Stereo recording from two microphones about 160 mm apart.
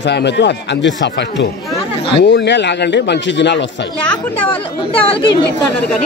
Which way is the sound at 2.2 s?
90° left.